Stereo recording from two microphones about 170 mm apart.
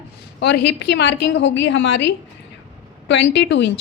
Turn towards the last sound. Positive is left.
turn(degrees=90)